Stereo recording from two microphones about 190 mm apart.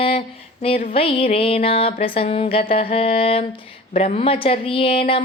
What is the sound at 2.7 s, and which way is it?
Mantra, 30° left (ahead or behind).